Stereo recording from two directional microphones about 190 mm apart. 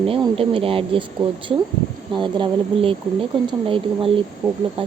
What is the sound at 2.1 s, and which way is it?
Speech, 25° right (ahead or behind).